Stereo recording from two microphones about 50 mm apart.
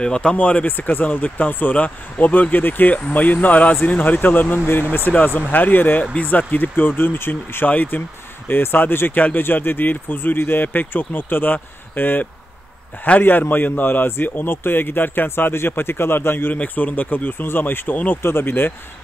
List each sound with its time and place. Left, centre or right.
0.0 s speech: centre
1.1 s speech: left
7.6 s speech: left
16.5 s speech: left